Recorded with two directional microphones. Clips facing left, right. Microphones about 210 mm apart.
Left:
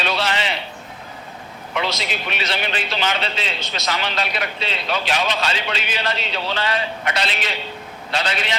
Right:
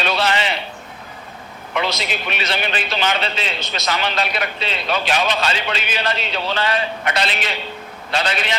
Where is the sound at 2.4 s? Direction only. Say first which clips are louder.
Right 2 dB; 50° right (ahead or behind).